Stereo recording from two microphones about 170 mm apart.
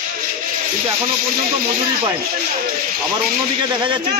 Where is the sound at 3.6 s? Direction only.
30° right (ahead or behind).